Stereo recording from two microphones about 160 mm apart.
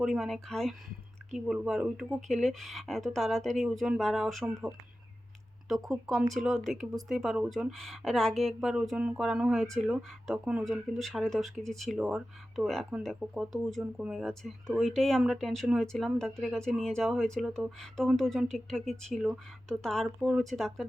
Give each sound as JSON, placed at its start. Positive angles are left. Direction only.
{"t": 0.0, "sound": "speech", "side_deg": 0}
{"t": 5.6, "sound": "speech", "side_deg": 0}